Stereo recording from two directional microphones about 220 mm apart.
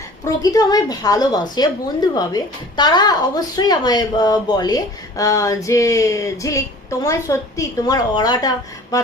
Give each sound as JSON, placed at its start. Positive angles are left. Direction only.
{"t": 0.4, "sound": "a woman's voice", "side_deg": 15}